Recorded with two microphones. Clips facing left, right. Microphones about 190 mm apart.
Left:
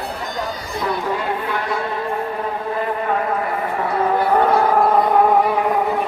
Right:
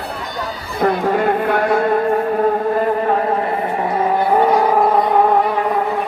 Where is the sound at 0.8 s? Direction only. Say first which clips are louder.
Right 7 dB; 55° right (ahead or behind).